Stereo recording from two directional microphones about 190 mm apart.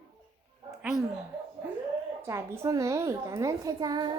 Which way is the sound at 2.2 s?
15° right (ahead or behind).